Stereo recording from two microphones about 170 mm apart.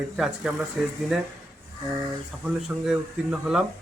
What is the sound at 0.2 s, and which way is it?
Speech, 5° right (ahead or behind).